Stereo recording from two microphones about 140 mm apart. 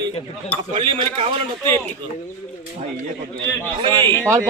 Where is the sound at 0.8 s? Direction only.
40° right (ahead or behind).